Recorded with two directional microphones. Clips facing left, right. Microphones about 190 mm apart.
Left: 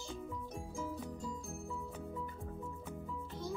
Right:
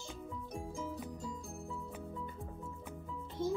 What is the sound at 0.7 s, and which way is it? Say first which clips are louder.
Music: left 2 dB; centre (ahead or behind).